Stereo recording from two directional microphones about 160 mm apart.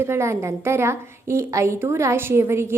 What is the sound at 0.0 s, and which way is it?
A woman's voice, 15° right (ahead or behind).